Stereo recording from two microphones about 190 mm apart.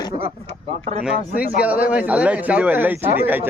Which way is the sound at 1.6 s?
5° right (ahead or behind).